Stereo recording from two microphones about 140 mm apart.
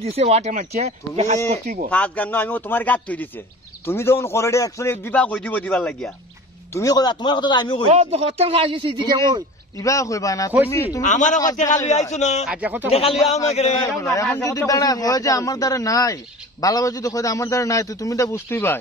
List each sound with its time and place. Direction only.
0.0 s speech: 45° right (ahead or behind)
1.5 s speech: 60° right (ahead or behind)
1.9 s a man's voice: 10° left (ahead or behind)
6.7 s speech: 25° left (ahead or behind)
7.9 s speech: 50° right (ahead or behind)
9.8 s a man's voice: 25° left (ahead or behind)
11.0 s speech: 65° left (ahead or behind)
12.4 s speech: 10° right (ahead or behind)
12.9 s a man's voice: 45° left (ahead or behind)
14.3 s a man's voice: 20° left (ahead or behind)